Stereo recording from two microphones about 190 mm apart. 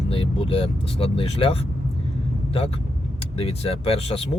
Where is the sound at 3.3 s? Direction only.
30° left (ahead or behind).